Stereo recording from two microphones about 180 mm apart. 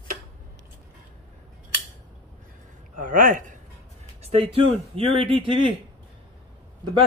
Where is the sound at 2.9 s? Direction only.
50° right (ahead or behind).